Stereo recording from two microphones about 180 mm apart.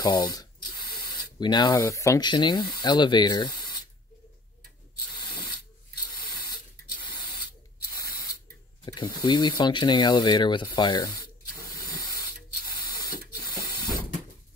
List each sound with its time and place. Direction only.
0.0 s speech: 25° left (ahead or behind)
5.1 s ratchet: 25° left (ahead or behind)
7.0 s spray: 25° left (ahead or behind)
8.8 s speech: 25° left (ahead or behind)
11.7 s hiss: 20° left (ahead or behind)
12.8 s printer: 20° left (ahead or behind)